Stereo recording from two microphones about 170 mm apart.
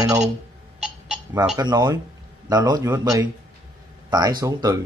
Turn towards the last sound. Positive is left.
turn(degrees=-20)  # may be behind; listen again after turning